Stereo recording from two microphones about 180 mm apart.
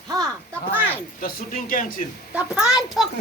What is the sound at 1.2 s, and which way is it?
Speech, 50° left (ahead or behind).